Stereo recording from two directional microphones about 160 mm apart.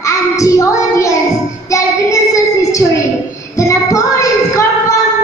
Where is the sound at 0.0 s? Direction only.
20° left (ahead or behind).